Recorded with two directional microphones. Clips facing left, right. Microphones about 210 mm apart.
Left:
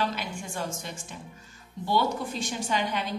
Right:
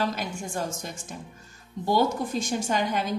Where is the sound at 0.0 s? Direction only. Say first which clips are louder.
Right 2 dB; 45° right (ahead or behind).